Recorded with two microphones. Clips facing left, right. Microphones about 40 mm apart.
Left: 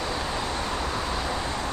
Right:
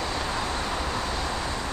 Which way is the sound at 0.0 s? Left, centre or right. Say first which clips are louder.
Even; centre.